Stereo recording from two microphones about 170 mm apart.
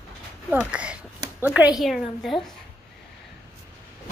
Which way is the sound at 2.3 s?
30° left (ahead or behind).